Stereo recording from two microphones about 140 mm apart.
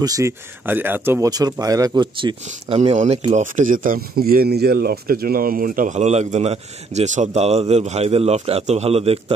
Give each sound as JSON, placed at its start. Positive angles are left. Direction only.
{"t": 0.0, "sound": "speech", "side_deg": -25}
{"t": 0.7, "sound": "speech", "side_deg": -15}
{"t": 1.3, "sound": "speech", "side_deg": -25}
{"t": 2.8, "sound": "speech", "side_deg": -55}
{"t": 5.9, "sound": "a man's voice", "side_deg": -55}